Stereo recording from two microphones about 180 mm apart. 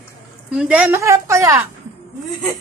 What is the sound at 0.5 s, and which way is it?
A woman's voice, 5° right (ahead or behind).